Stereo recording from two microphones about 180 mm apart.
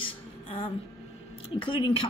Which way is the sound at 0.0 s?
30° left (ahead or behind).